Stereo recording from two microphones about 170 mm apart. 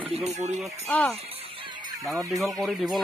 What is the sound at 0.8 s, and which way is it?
Speech, 10° left (ahead or behind).